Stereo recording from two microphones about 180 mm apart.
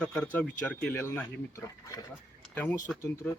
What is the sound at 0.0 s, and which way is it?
Speech, 5° left (ahead or behind).